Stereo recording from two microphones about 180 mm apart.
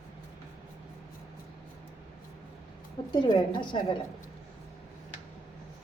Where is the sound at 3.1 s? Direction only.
25° left (ahead or behind).